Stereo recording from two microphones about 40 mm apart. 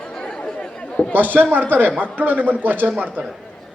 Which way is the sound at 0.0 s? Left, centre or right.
Left.